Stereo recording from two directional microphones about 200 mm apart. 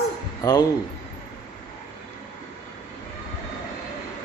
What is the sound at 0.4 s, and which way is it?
Speech, 20° left (ahead or behind).